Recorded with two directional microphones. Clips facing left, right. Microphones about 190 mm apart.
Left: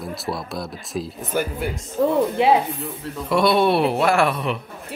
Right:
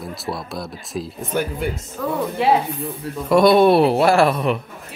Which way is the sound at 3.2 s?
45° right (ahead or behind).